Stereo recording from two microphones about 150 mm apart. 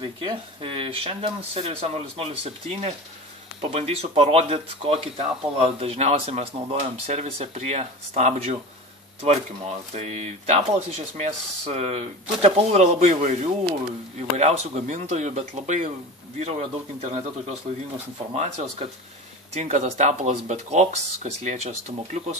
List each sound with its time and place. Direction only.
0.0 s speech: 35° right (ahead or behind)
9.9 s speech: 50° right (ahead or behind)